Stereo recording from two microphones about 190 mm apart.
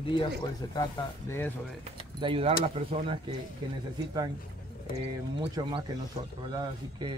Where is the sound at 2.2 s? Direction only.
30° right (ahead or behind).